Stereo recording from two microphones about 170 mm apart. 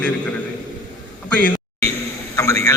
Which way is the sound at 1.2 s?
5° left (ahead or behind).